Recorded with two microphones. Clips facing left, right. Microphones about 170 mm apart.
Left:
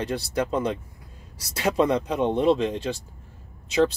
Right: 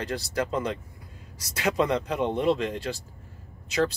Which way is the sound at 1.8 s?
20° left (ahead or behind).